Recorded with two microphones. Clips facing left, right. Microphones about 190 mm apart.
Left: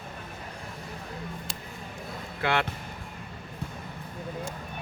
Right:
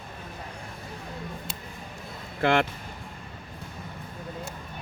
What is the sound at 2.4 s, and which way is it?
Speech, 45° right (ahead or behind).